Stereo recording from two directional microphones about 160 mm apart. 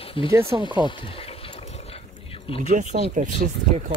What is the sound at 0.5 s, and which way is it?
Speech, 30° right (ahead or behind).